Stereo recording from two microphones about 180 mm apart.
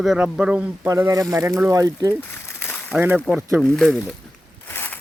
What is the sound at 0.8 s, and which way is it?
Speech, 15° right (ahead or behind).